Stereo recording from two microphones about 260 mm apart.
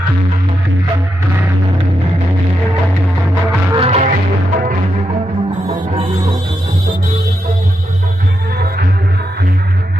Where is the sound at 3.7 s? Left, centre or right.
Right.